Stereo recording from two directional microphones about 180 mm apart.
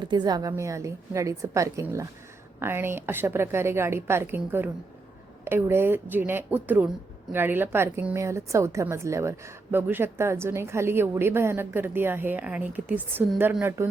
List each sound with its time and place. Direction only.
0.0 s a woman's voice: 25° right (ahead or behind)